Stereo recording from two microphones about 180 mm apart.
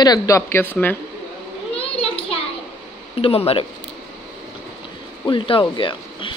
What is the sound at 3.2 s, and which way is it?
Speech, 35° left (ahead or behind).